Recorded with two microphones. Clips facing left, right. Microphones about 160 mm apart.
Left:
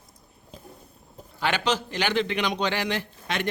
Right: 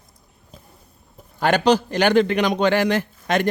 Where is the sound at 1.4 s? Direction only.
40° right (ahead or behind).